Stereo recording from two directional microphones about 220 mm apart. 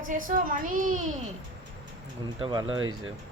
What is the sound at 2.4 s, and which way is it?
Speech, 25° right (ahead or behind).